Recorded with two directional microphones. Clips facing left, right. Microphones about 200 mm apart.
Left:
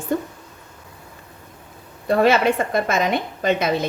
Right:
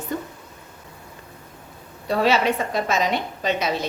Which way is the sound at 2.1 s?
50° left (ahead or behind).